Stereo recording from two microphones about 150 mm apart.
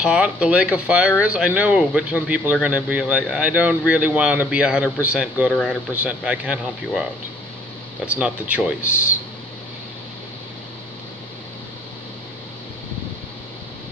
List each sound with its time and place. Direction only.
0.0 s a man's voice: 5° right (ahead or behind)
5.5 s speech: 5° left (ahead or behind)
5.9 s a man's voice: 10° right (ahead or behind)